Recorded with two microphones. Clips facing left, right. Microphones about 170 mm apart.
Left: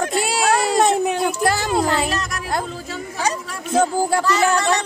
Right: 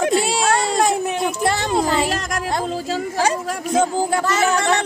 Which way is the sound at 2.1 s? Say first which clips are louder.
Right 2 dB; 90° right.